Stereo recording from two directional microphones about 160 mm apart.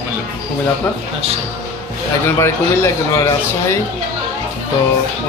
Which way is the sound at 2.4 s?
15° left (ahead or behind).